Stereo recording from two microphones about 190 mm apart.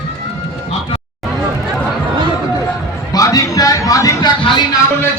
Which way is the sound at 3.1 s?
20° left (ahead or behind).